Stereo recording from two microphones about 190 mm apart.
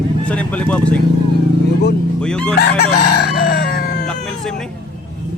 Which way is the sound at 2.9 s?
55° left (ahead or behind).